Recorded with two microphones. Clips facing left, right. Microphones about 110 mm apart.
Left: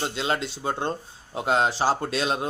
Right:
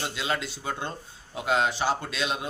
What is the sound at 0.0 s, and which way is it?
Speech, 30° left (ahead or behind).